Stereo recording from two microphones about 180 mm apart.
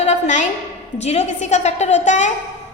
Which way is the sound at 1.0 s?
35° left (ahead or behind).